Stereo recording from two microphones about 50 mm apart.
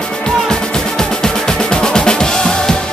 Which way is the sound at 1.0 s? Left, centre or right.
Centre.